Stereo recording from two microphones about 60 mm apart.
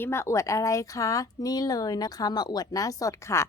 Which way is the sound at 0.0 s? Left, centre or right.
Left.